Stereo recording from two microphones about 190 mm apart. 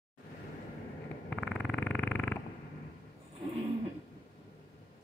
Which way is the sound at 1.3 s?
Centre (ahead or behind).